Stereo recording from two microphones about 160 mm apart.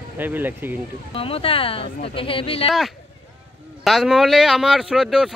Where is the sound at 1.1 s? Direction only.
35° left (ahead or behind).